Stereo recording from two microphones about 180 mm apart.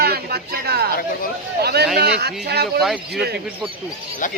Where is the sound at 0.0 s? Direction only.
60° right (ahead or behind).